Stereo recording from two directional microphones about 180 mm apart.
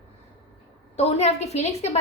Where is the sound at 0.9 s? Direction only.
35° left (ahead or behind).